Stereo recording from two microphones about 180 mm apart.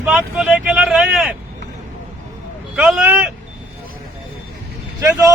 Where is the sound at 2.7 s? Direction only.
5° right (ahead or behind).